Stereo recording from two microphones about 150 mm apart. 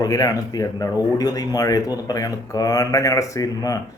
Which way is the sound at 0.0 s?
25° left (ahead or behind).